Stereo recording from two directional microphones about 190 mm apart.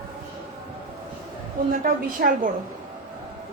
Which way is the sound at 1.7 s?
45° right (ahead or behind).